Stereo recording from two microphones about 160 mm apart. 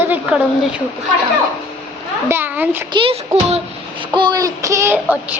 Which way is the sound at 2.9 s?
35° right (ahead or behind).